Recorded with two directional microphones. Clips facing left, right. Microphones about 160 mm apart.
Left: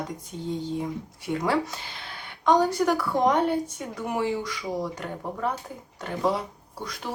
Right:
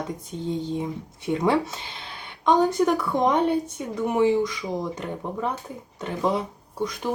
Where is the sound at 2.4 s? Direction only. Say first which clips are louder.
Right 2 dB; 20° right (ahead or behind).